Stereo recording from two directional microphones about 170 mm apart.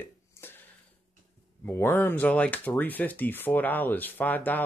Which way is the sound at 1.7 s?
15° left (ahead or behind).